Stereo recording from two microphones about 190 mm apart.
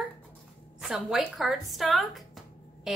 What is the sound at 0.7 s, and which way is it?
A woman's voice, centre (ahead or behind).